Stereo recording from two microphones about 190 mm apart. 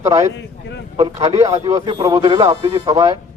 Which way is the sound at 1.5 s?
20° right (ahead or behind).